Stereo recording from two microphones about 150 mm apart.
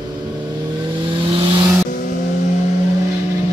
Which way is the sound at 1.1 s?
35° right (ahead or behind).